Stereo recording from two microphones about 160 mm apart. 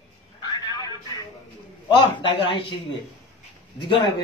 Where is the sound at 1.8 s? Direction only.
30° left (ahead or behind).